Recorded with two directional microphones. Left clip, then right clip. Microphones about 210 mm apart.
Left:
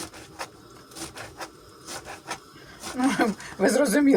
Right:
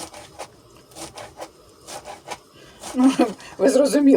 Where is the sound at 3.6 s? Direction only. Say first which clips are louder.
Right 5 dB; 20° right (ahead or behind).